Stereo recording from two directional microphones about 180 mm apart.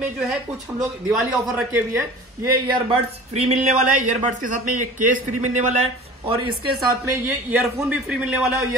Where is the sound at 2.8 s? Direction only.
35° right (ahead or behind).